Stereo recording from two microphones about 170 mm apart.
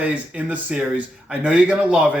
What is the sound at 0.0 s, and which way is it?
Speech, 10° right (ahead or behind).